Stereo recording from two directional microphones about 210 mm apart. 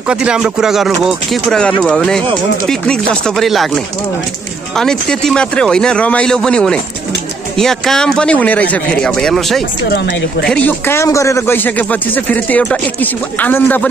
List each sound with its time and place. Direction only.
0.1 s speech: 5° right (ahead or behind)
9.8 s speech: 55° left (ahead or behind)
10.4 s a man's voice: 5° left (ahead or behind)